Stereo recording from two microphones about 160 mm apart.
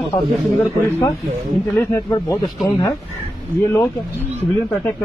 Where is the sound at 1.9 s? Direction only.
20° left (ahead or behind).